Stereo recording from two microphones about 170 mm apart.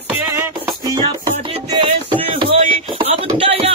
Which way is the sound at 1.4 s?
30° right (ahead or behind).